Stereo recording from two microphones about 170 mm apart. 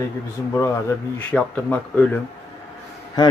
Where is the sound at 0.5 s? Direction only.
15° left (ahead or behind).